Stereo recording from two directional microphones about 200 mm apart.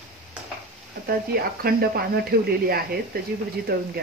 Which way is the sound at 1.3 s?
50° right (ahead or behind).